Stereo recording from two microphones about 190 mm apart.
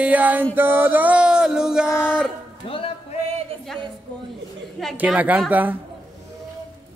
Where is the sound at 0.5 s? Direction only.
10° right (ahead or behind).